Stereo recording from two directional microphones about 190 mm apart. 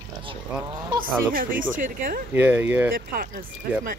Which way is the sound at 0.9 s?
25° right (ahead or behind).